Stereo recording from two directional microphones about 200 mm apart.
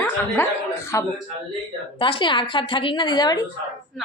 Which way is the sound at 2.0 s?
25° left (ahead or behind).